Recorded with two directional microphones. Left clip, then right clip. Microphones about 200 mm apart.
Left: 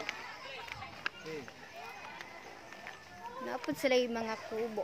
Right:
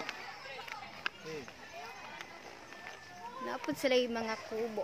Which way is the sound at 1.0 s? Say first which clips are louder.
Even; 15° right (ahead or behind).